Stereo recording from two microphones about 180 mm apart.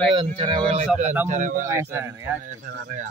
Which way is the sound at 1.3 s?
45° right (ahead or behind).